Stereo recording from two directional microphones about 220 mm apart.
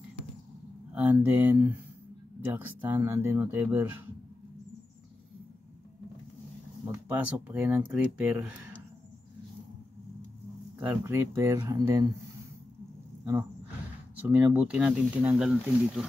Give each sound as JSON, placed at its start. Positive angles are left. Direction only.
{"t": 0.9, "sound": "speech", "side_deg": -5}
{"t": 6.9, "sound": "speech", "side_deg": -10}
{"t": 10.8, "sound": "speech", "side_deg": -10}
{"t": 13.2, "sound": "speech", "side_deg": -15}